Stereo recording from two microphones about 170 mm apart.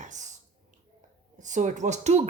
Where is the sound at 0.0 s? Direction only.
45° right (ahead or behind).